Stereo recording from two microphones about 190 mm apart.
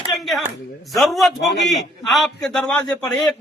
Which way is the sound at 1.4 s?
70° left (ahead or behind).